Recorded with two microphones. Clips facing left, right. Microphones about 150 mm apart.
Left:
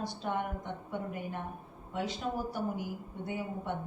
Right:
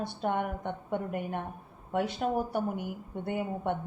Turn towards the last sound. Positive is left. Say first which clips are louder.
# right 5 dB
turn(degrees=-60)  # may be behind; listen again after turning